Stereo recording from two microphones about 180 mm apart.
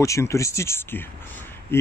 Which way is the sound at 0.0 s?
15° left (ahead or behind).